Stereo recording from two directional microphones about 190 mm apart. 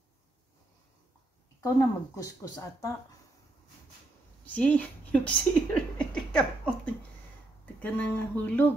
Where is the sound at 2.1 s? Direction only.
15° left (ahead or behind).